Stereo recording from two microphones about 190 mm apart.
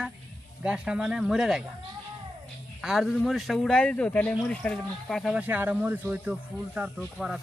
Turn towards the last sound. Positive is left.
turn(degrees=-5)  # may be behind; listen again after turning